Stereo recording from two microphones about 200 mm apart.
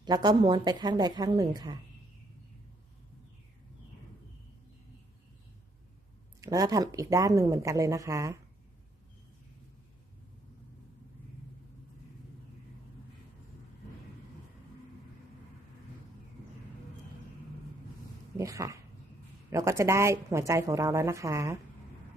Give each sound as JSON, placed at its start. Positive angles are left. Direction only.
{"t": 0.0, "sound": "a woman's voice", "side_deg": -20}
{"t": 6.4, "sound": "speech", "side_deg": -15}
{"t": 18.3, "sound": "speech", "side_deg": -15}